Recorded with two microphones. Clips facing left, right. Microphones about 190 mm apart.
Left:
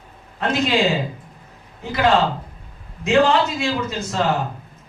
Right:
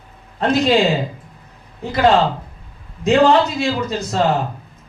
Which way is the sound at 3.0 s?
35° right (ahead or behind).